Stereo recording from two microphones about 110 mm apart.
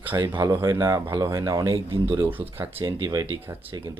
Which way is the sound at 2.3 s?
15° right (ahead or behind).